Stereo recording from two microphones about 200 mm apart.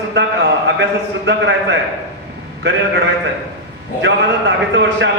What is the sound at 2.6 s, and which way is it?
Speech, 60° right (ahead or behind).